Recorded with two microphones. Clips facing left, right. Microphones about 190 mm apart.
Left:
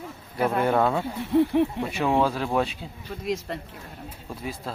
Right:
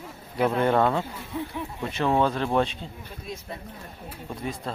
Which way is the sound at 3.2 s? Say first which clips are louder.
Left 9 dB; 90° left.